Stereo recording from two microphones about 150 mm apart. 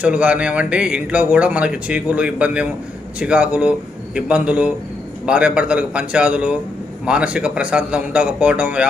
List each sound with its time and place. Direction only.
0.0 s speech: 10° right (ahead or behind)